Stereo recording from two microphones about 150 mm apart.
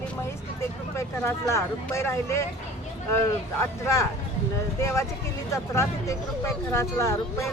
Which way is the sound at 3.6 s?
20° left (ahead or behind).